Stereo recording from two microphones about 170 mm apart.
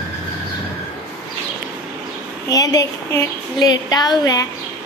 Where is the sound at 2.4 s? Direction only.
20° left (ahead or behind).